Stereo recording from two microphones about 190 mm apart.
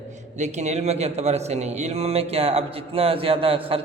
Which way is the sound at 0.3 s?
35° right (ahead or behind).